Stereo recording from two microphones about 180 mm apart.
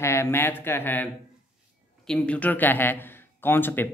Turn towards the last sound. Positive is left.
turn(degrees=10)  # may be behind; listen again after turning